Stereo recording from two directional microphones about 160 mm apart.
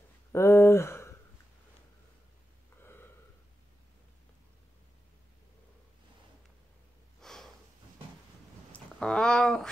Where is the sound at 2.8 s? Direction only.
15° left (ahead or behind).